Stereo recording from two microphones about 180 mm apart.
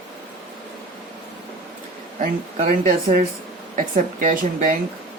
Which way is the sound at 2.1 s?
45° right (ahead or behind).